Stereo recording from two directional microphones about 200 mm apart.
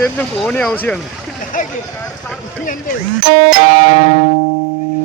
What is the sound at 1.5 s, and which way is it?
Speech, 40° left (ahead or behind).